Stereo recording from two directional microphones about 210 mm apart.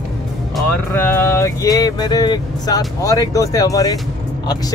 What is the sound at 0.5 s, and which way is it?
Music, 10° left (ahead or behind).